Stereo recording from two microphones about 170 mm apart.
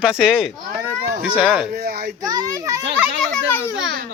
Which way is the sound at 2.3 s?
20° right (ahead or behind).